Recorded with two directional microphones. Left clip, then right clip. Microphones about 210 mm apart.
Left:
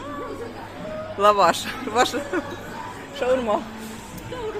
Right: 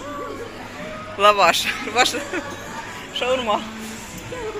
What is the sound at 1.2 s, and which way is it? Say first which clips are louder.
A man's voice: right 2 dB; 25° left (ahead or behind).